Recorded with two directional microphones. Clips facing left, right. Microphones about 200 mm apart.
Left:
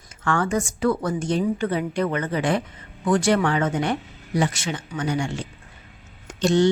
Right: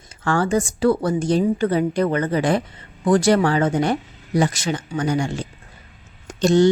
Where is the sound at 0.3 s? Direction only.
30° right (ahead or behind).